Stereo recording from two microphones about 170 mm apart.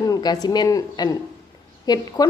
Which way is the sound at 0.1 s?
25° left (ahead or behind).